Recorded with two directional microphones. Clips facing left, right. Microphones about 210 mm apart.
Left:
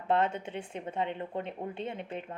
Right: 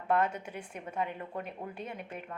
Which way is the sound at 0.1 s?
25° left (ahead or behind).